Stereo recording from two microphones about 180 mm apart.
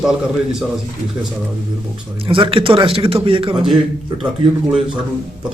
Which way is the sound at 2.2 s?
30° right (ahead or behind).